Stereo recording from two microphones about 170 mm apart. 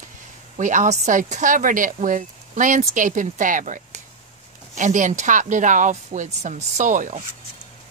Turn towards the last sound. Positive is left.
turn(degrees=-45)  # may be behind; listen again after turning